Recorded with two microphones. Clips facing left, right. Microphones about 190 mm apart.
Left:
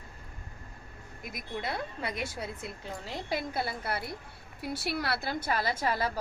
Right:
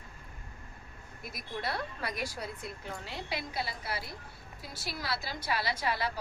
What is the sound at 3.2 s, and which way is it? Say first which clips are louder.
A woman's voice: left 5 dB; 50° left (ahead or behind).